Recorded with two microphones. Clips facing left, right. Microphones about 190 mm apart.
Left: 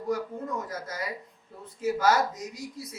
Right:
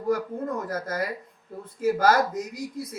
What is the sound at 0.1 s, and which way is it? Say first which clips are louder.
Speech: right 4 dB; 55° right (ahead or behind).